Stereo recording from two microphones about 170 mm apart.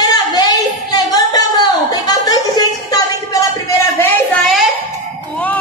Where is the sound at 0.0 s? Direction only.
25° left (ahead or behind).